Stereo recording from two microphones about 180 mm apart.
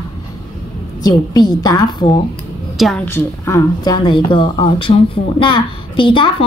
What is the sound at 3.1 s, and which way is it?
Speech, 15° left (ahead or behind).